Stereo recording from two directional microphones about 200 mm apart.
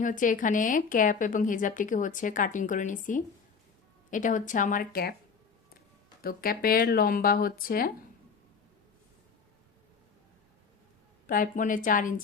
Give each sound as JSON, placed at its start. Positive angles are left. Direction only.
{"t": 0.0, "sound": "a woman's voice", "side_deg": 40}
{"t": 6.2, "sound": "speech", "side_deg": 45}
{"t": 11.3, "sound": "a woman's voice", "side_deg": 40}